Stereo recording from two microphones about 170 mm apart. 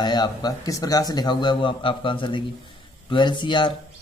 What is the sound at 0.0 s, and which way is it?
A man's voice, 25° left (ahead or behind).